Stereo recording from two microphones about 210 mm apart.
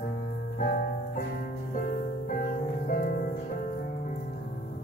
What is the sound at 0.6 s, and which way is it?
Music, 40° left (ahead or behind).